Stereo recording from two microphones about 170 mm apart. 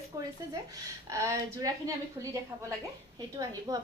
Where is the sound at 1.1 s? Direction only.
20° right (ahead or behind).